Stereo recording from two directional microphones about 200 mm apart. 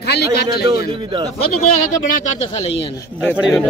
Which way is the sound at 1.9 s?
40° left (ahead or behind).